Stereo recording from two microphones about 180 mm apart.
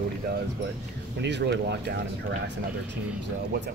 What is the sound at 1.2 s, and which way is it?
Speech, 75° right (ahead or behind).